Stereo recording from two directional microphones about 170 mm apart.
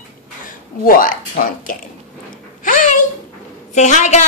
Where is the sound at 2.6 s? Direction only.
50° left (ahead or behind).